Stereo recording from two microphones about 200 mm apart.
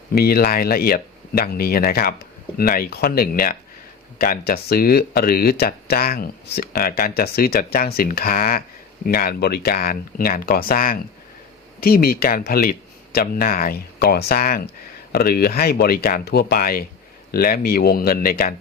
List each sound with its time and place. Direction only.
0.1 s speech: 50° left (ahead or behind)